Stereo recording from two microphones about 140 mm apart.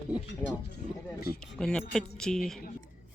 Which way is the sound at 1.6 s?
5° left (ahead or behind).